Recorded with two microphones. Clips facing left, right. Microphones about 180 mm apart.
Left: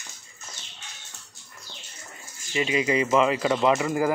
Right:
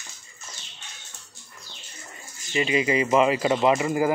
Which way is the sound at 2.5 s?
Centre (ahead or behind).